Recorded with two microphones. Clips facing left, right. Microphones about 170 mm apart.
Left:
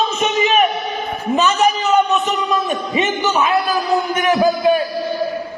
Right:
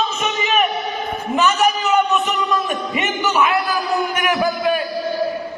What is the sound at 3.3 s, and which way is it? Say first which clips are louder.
Speech: even; 25° left (ahead or behind).